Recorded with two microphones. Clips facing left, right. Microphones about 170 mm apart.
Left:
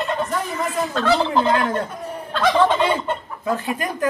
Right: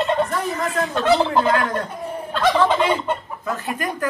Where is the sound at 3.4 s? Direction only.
25° left (ahead or behind).